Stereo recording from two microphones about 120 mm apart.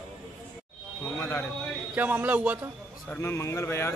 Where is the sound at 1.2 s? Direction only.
20° left (ahead or behind).